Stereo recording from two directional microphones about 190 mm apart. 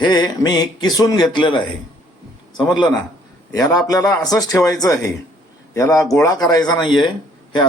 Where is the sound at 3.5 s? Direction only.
20° left (ahead or behind).